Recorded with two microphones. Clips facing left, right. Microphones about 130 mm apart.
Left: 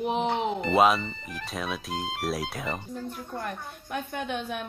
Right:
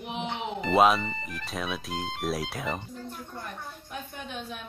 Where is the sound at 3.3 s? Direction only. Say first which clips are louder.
Left 5 dB; 65° left (ahead or behind).